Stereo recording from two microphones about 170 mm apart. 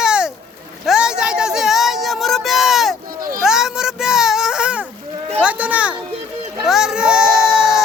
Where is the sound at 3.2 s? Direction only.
55° right (ahead or behind).